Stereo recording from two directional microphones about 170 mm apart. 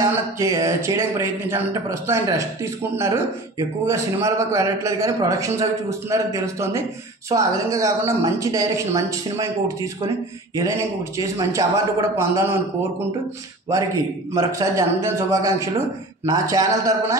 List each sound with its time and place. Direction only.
0.0 s a man's voice: 20° right (ahead or behind)
14.3 s a man's voice: 20° right (ahead or behind)